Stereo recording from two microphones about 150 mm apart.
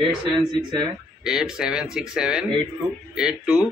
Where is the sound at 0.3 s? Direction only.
30° right (ahead or behind).